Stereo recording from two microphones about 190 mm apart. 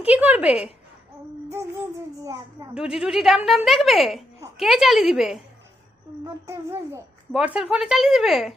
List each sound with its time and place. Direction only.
0.0 s music: 10° right (ahead or behind)
2.7 s a woman's voice: 5° right (ahead or behind)
6.2 s music: 15° right (ahead or behind)
7.3 s a woman's voice: 5° right (ahead or behind)